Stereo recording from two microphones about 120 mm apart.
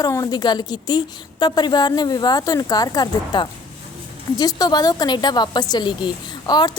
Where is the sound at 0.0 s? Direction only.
30° left (ahead or behind).